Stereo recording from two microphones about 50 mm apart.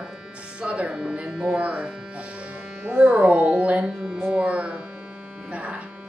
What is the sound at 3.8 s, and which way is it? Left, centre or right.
Speech, centre.